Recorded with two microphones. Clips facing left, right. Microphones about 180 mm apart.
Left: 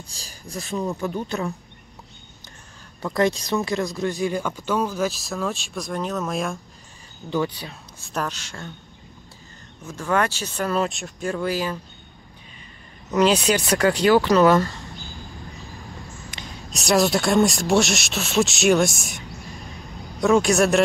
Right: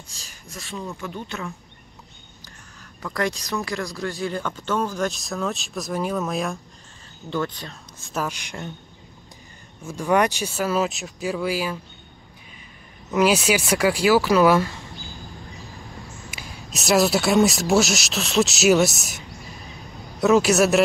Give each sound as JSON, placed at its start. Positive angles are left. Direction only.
{"t": 0.1, "sound": "a woman's voice", "side_deg": 35}
{"t": 3.0, "sound": "speech", "side_deg": 25}
{"t": 7.2, "sound": "speech", "side_deg": 10}
{"t": 8.1, "sound": "speech", "side_deg": -10}
{"t": 9.8, "sound": "speech", "side_deg": -15}
{"t": 13.1, "sound": "speech", "side_deg": -10}
{"t": 16.3, "sound": "speech", "side_deg": -5}